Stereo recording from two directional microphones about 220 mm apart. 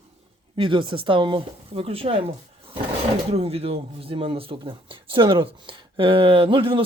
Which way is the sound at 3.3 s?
25° right (ahead or behind).